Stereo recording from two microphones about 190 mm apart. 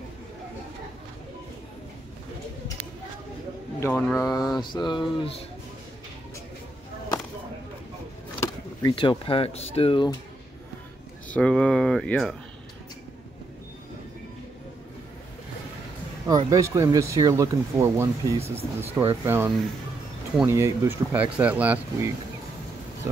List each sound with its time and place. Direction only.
4.2 s speech: 20° left (ahead or behind)
8.4 s speech: 20° left (ahead or behind)
11.2 s speech: 5° left (ahead or behind)
16.3 s speech: 20° right (ahead or behind)